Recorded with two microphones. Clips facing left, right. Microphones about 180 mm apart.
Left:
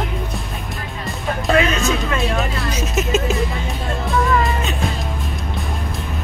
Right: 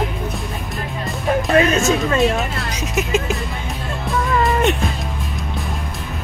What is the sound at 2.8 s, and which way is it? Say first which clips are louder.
Music: even; 15° right (ahead or behind).